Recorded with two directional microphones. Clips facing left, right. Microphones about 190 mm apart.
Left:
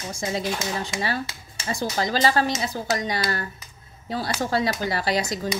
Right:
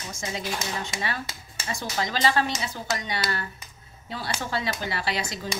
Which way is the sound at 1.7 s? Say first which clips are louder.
Left 5 dB; 35° left (ahead or behind).